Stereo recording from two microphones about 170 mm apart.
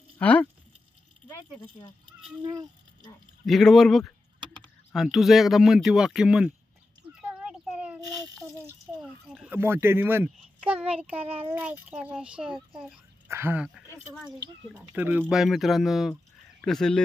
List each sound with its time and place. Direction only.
0.2 s speech: 10° left (ahead or behind)
2.4 s a sound: 20° right (ahead or behind)
3.4 s speech: centre (ahead or behind)
7.2 s a sound: 5° right (ahead or behind)
9.5 s speech: 15° right (ahead or behind)
11.1 s a child's voice: 35° right (ahead or behind)
11.4 s speech: 10° right (ahead or behind); by 17.0 s 5° left (ahead or behind)